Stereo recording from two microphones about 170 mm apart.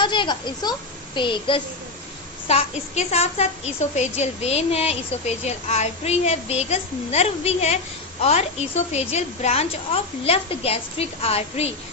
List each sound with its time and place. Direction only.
0.0 s a child's voice: 25° left (ahead or behind)
2.4 s a woman's voice: 40° left (ahead or behind)